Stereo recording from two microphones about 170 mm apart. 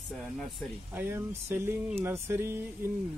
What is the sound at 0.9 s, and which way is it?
Speech, 10° right (ahead or behind).